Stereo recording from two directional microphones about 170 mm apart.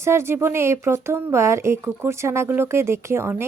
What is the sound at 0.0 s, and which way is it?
A woman's voice, 15° right (ahead or behind).